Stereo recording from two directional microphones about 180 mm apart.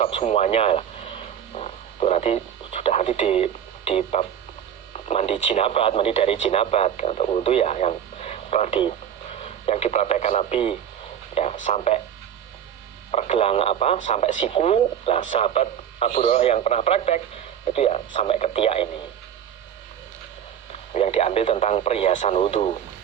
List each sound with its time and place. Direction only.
0.0 s speech: 40° left (ahead or behind)
13.1 s speech: 35° left (ahead or behind)
20.9 s speech: 35° left (ahead or behind)